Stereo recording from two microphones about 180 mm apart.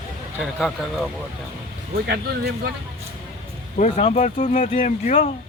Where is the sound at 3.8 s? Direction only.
40° left (ahead or behind).